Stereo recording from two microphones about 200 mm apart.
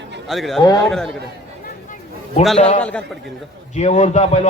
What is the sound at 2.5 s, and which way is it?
Speech, 30° left (ahead or behind).